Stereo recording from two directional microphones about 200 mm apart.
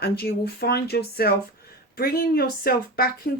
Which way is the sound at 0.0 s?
50° left (ahead or behind).